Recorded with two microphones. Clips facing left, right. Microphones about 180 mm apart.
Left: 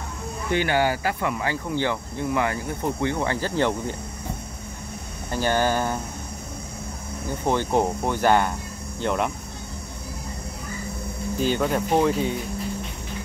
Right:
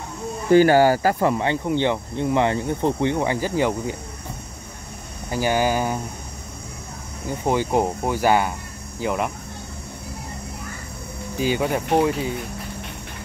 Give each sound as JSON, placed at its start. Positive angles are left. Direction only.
{"t": 0.5, "sound": "speech", "side_deg": -40}
{"t": 5.3, "sound": "speech", "side_deg": -10}
{"t": 7.4, "sound": "speech", "side_deg": -10}
{"t": 11.3, "sound": "speech", "side_deg": -10}